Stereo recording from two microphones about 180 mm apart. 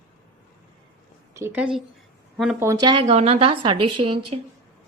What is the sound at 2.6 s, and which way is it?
A woman's voice, 20° right (ahead or behind).